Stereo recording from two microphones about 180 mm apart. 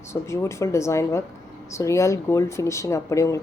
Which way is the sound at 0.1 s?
15° left (ahead or behind).